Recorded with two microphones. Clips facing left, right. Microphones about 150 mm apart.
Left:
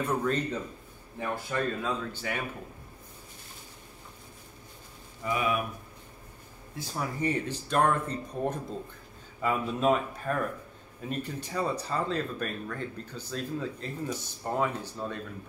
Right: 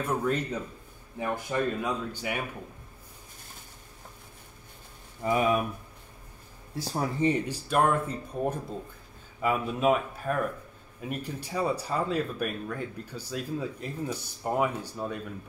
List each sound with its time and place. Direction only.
0.0 s speech: 10° right (ahead or behind)
5.2 s speech: 40° right (ahead or behind)
6.7 s speech: 35° right (ahead or behind)
7.2 s speech: 20° right (ahead or behind)